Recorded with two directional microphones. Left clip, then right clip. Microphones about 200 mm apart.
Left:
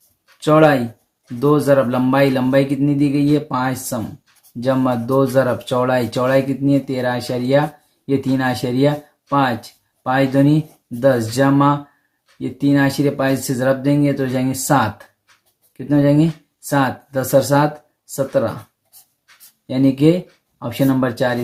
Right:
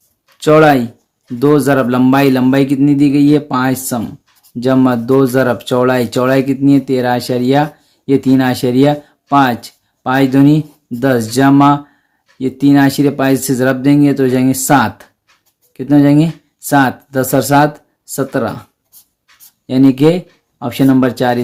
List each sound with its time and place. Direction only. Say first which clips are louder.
0.3 s speech: right 5 dB; 50° right (ahead or behind)
19.6 s speech: right 5 dB; 50° right (ahead or behind)